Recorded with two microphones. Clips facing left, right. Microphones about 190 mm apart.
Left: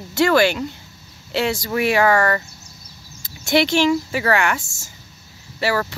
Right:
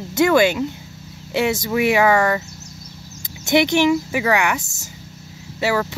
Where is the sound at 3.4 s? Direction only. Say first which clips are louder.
Right 1 dB; 20° right (ahead or behind).